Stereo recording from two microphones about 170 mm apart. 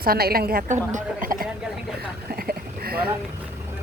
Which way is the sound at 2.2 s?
60° right (ahead or behind).